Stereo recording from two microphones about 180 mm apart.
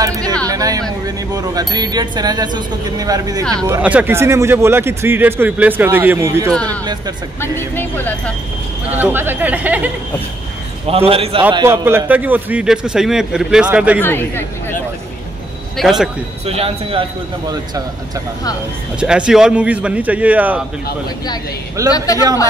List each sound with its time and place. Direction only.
0.0 s a sound: 20° right (ahead or behind)
1.0 s speech: 20° right (ahead or behind)
6.5 s speech: 5° left (ahead or behind)
8.9 s speech: 10° right (ahead or behind)
10.9 s speech: 30° right (ahead or behind)
11.6 s speech: 15° right (ahead or behind)
14.0 s speech: 10° left (ahead or behind)
15.8 s speech: centre (ahead or behind)
16.4 s speech: 35° right (ahead or behind)
18.9 s speech: 5° right (ahead or behind)
21.9 s speech: 20° left (ahead or behind)